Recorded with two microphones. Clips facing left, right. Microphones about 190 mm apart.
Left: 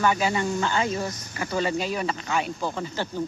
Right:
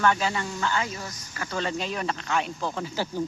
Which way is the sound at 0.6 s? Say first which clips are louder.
Left 4 dB; 25° left (ahead or behind).